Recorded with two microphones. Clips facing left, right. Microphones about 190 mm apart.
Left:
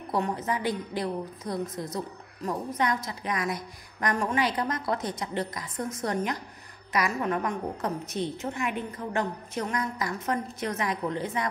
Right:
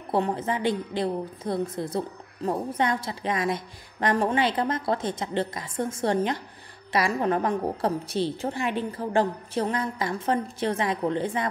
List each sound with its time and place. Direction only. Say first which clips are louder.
0.1 s a woman's voice: right 3 dB; 30° right (ahead or behind)